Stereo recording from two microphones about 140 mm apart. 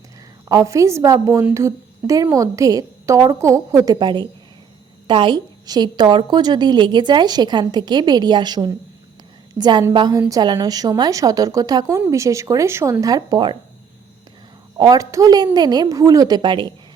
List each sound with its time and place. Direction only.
0.4 s a woman's voice: 25° right (ahead or behind)
14.8 s a woman's voice: 25° right (ahead or behind)